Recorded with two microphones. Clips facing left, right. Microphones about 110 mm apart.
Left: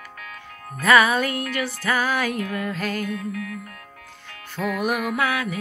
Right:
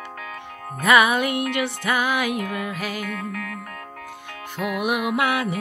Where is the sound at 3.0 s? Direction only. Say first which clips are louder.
Left 1 dB; 60° right (ahead or behind).